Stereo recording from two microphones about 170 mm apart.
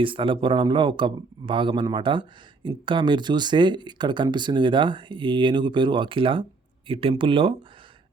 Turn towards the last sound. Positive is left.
turn(degrees=-30)  # may be behind; listen again after turning